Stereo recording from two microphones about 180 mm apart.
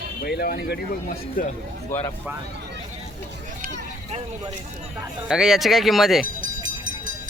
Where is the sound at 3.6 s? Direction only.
40° right (ahead or behind).